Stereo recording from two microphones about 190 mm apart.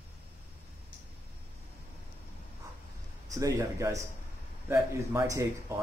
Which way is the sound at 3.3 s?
15° right (ahead or behind).